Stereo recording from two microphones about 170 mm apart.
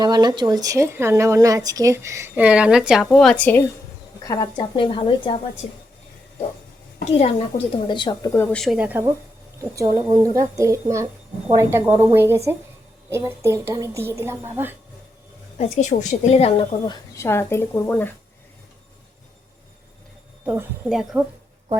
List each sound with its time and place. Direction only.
0.0 s a woman's voice: 25° right (ahead or behind); by 3.6 s 10° left (ahead or behind)
4.3 s speech: 25° left (ahead or behind)
7.0 s a woman's voice: 35° left (ahead or behind)
8.3 s a woman's voice: 10° left (ahead or behind); by 14.5 s 15° right (ahead or behind)
15.5 s a woman's voice: 40° left (ahead or behind)
17.2 s speech: 15° left (ahead or behind)
20.4 s a woman's voice: 10° right (ahead or behind)